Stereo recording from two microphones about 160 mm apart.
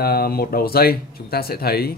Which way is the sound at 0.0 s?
70° left (ahead or behind).